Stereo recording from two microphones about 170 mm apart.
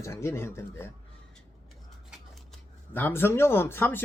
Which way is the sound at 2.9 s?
10° left (ahead or behind).